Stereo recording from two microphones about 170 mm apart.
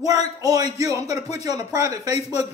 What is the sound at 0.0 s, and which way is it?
Speech, 20° right (ahead or behind).